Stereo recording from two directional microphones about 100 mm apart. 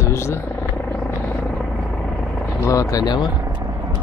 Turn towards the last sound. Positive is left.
turn(degrees=40)  # may be behind; listen again after turning